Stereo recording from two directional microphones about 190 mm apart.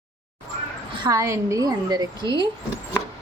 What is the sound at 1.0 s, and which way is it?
A woman's voice, 15° right (ahead or behind).